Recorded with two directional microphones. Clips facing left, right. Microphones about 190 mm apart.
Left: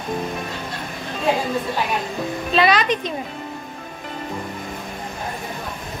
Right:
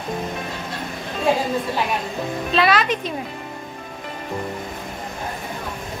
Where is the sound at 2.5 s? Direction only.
Centre (ahead or behind).